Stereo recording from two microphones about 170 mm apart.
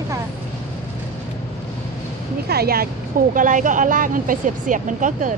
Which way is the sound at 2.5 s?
65° right (ahead or behind).